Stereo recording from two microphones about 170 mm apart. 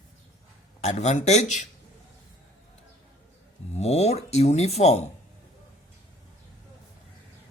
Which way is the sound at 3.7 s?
40° left (ahead or behind).